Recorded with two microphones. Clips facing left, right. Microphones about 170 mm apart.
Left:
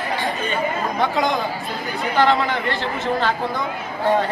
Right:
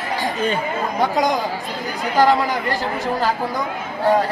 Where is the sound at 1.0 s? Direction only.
40° right (ahead or behind).